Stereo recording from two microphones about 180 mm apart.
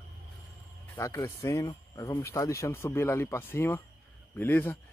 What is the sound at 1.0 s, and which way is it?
Speech, 15° left (ahead or behind).